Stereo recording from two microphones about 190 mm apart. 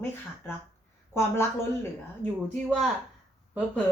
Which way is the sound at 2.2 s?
40° right (ahead or behind).